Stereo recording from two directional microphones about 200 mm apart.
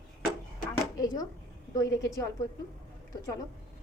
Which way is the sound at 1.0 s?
15° left (ahead or behind).